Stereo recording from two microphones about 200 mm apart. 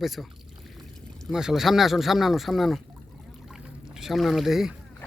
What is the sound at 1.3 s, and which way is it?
Speech, centre (ahead or behind).